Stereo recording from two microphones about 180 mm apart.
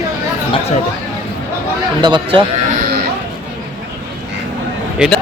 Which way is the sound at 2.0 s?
25° right (ahead or behind).